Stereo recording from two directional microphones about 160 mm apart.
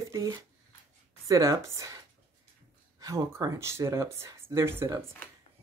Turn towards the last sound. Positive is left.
turn(degrees=-15)  # may be behind; listen again after turning